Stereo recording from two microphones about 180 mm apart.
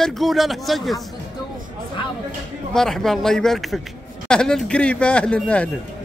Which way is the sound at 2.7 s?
5° left (ahead or behind).